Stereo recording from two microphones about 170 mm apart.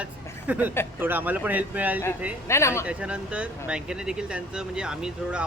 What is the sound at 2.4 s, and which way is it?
Speech, 15° left (ahead or behind).